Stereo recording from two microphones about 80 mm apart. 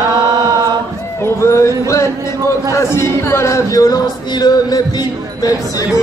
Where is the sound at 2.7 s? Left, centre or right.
Left.